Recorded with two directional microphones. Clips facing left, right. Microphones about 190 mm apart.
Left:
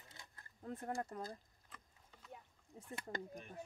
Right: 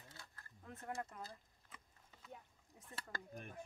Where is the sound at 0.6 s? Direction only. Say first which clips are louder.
Left 4 dB; 30° left (ahead or behind).